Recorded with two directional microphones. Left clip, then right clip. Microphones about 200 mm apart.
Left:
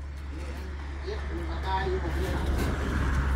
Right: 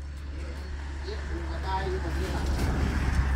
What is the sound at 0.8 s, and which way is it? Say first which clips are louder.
Vehicle: left 2 dB; 50° right (ahead or behind).